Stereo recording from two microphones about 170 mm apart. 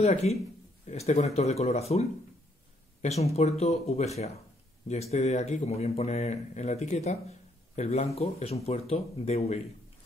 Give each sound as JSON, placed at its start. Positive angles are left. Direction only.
{"t": 0.0, "sound": "speech", "side_deg": 40}